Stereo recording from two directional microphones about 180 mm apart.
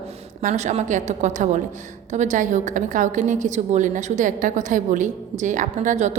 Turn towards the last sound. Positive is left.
turn(degrees=-45)  # may be behind; listen again after turning